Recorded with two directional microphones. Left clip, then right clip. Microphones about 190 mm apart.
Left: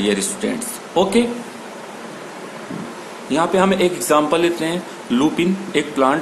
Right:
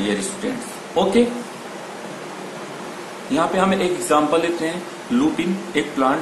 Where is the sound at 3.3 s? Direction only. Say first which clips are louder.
Left 2 dB; 55° left (ahead or behind).